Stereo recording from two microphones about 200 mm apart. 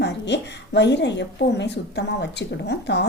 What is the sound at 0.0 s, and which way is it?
A woman's voice, 60° left (ahead or behind).